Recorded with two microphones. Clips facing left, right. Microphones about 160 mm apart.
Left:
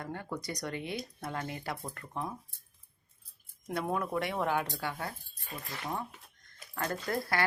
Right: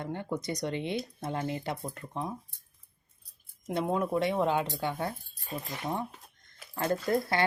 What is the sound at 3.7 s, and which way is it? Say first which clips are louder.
Speech: right 4 dB; 20° right (ahead or behind).